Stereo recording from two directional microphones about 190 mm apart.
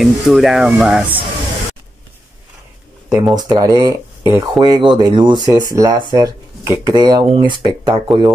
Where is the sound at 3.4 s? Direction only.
20° right (ahead or behind).